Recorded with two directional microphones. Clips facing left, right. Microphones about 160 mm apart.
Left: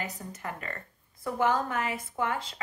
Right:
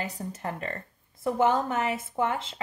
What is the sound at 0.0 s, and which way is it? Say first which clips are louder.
Speech: right 4 dB; 30° right (ahead or behind).